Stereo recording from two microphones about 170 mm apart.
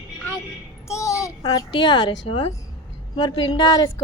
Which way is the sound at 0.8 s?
15° left (ahead or behind).